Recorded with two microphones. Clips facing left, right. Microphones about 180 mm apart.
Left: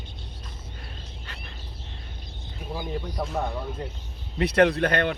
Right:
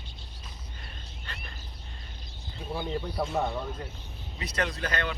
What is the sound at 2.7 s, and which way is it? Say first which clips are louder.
Speech: even; 10° left (ahead or behind).